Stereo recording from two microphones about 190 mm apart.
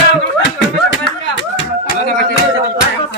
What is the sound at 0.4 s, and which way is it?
Clapping, 75° left (ahead or behind).